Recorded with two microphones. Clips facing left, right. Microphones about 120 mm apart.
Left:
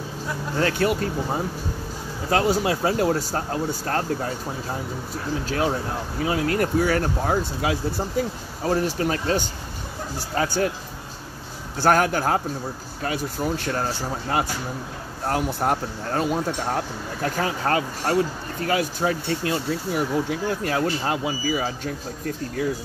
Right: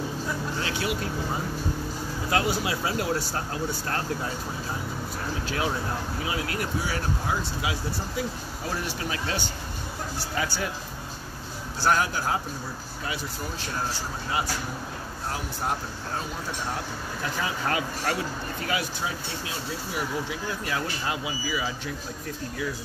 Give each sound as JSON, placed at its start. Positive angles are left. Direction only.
{"t": 0.6, "sound": "speech", "side_deg": 50}
{"t": 2.2, "sound": "speech", "side_deg": 40}
{"t": 5.4, "sound": "speech", "side_deg": 40}
{"t": 11.8, "sound": "speech", "side_deg": 55}
{"t": 15.2, "sound": "speech", "side_deg": 55}